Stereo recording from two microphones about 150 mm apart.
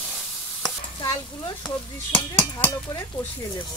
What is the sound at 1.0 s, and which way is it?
Speech, 25° left (ahead or behind).